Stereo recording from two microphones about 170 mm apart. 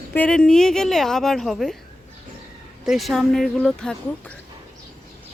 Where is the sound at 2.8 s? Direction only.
Centre (ahead or behind).